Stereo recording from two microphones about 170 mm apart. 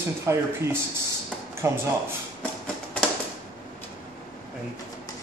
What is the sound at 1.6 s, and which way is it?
Speech, 15° right (ahead or behind).